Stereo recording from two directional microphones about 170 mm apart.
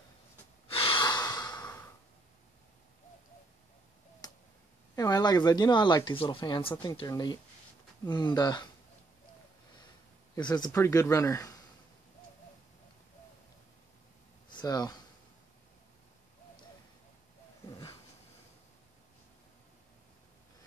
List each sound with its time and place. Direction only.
0.7 s breathing: 30° left (ahead or behind)
4.2 s finger snapping: 20° left (ahead or behind)
4.9 s speech: 20° left (ahead or behind)
10.3 s speech: 25° left (ahead or behind)
14.5 s speech: 25° left (ahead or behind)